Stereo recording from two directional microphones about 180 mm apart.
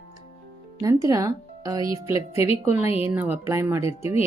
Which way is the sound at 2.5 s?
35° left (ahead or behind).